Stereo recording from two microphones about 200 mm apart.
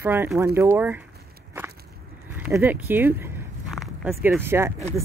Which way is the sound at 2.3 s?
5° right (ahead or behind).